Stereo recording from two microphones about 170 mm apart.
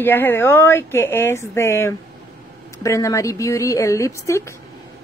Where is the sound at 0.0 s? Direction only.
10° left (ahead or behind).